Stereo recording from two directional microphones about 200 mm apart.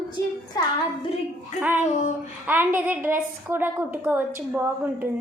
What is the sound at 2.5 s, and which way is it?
A woman's voice, 10° right (ahead or behind).